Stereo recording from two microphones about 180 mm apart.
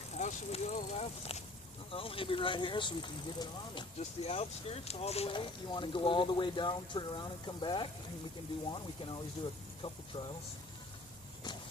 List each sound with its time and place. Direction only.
0.2 s speech: 40° left (ahead or behind)